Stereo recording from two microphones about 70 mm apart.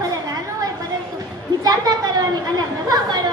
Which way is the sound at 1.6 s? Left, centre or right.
Right.